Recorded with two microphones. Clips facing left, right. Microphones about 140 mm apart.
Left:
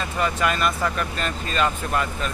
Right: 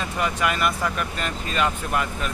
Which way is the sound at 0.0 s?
15° right (ahead or behind).